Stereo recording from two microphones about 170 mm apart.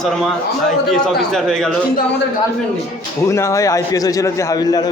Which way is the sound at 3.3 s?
15° left (ahead or behind).